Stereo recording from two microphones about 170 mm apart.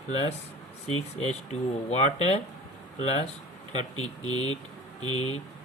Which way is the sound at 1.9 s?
40° left (ahead or behind).